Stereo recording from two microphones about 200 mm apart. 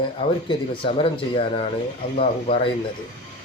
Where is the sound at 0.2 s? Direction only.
25° left (ahead or behind).